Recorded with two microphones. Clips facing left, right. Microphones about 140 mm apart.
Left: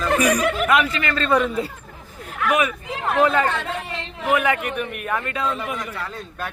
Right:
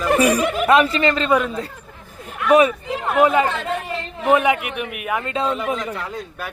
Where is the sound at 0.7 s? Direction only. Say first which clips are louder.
Right 5 dB; 30° right (ahead or behind).